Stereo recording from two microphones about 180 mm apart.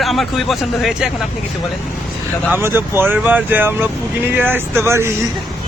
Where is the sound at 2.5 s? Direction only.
10° right (ahead or behind).